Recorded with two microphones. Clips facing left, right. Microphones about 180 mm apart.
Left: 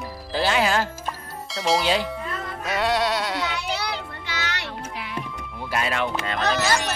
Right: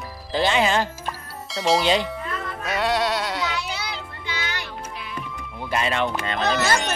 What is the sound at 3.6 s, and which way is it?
Music, 60° left (ahead or behind).